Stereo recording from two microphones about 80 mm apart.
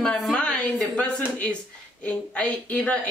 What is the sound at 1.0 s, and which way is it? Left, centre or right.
A woman's voice, centre.